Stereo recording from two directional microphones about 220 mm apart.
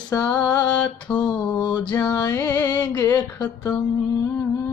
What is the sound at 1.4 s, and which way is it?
Music, 15° left (ahead or behind).